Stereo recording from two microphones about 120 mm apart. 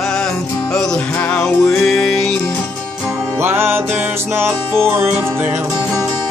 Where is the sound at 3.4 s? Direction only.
20° right (ahead or behind).